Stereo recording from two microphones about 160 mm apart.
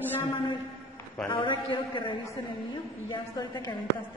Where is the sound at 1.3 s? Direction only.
30° left (ahead or behind).